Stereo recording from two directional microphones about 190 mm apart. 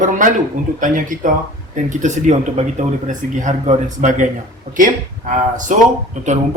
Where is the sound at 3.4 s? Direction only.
40° right (ahead or behind).